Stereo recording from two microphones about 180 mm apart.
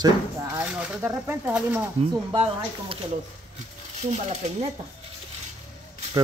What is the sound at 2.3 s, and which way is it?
Speech, 30° right (ahead or behind).